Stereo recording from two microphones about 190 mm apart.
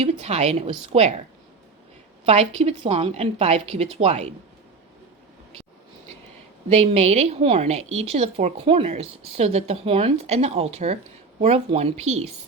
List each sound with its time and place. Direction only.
0.0 s a woman's voice: 35° right (ahead or behind)
2.2 s a woman's voice: 35° right (ahead or behind)
6.7 s a woman's voice: 35° right (ahead or behind)